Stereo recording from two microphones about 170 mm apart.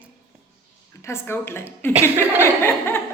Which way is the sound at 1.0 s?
15° left (ahead or behind).